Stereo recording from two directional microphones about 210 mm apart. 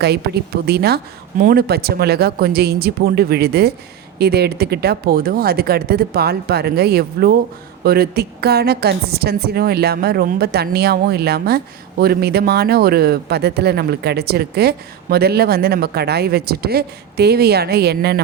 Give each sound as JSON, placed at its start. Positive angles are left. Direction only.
{"t": 0.6, "sound": "a woman's voice", "side_deg": -50}